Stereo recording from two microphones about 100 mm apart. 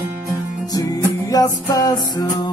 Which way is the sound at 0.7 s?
35° left (ahead or behind).